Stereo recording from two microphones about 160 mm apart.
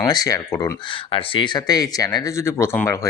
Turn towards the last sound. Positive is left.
turn(degrees=15)  # may be behind; listen again after turning